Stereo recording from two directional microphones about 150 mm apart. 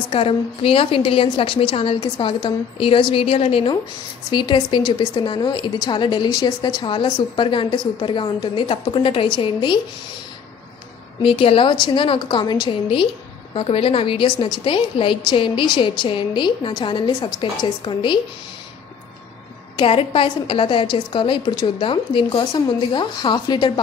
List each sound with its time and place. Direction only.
0.1 s a woman's voice: 40° left (ahead or behind)
11.2 s a woman's voice: 35° left (ahead or behind)
19.8 s a woman's voice: 40° left (ahead or behind)